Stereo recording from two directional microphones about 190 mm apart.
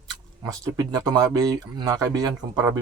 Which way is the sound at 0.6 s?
20° right (ahead or behind).